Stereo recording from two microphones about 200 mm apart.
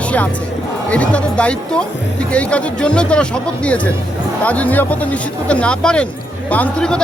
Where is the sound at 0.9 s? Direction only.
5° left (ahead or behind).